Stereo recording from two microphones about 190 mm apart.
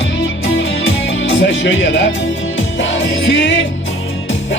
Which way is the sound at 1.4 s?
75° left (ahead or behind).